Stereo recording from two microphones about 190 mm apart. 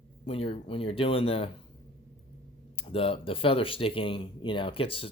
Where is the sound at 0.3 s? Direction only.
30° left (ahead or behind).